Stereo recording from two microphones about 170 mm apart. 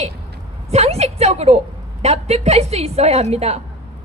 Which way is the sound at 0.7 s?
40° right (ahead or behind).